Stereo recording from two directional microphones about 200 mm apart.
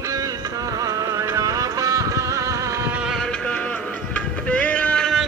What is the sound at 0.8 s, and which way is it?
Music, 15° right (ahead or behind).